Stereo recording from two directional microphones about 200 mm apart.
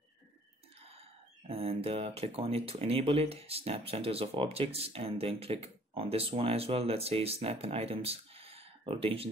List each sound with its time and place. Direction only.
1.5 s speech: 30° right (ahead or behind)